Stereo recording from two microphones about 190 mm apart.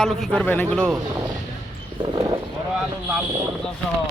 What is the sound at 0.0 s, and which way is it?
Speech, centre (ahead or behind).